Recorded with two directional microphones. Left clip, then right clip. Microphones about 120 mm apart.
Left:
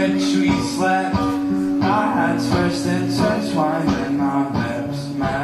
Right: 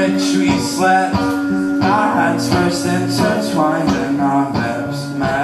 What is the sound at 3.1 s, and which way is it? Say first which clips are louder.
Music: right 3 dB; 20° right (ahead or behind).